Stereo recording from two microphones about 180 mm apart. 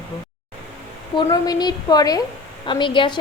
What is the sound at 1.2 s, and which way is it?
A woman's voice, 20° left (ahead or behind).